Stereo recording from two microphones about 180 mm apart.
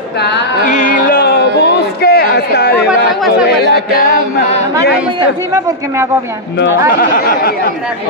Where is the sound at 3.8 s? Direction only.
55° left (ahead or behind).